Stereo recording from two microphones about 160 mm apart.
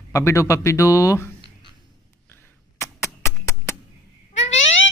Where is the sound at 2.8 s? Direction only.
15° left (ahead or behind).